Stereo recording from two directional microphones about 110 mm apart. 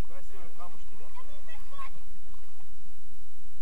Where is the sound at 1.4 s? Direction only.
25° right (ahead or behind).